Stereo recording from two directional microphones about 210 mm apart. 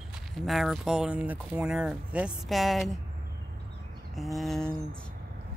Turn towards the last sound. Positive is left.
turn(degrees=0)  # may be behind; listen again after turning